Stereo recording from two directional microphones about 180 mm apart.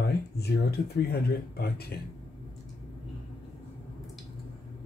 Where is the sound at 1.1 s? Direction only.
60° left (ahead or behind).